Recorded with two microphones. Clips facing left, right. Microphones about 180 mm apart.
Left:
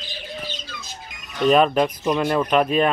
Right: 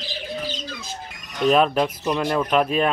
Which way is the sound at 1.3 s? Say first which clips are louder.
Left 1 dB; centre (ahead or behind).